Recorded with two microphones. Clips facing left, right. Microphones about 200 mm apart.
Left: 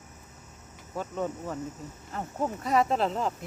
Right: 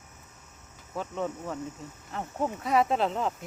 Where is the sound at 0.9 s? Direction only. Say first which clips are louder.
Even; 5° left (ahead or behind).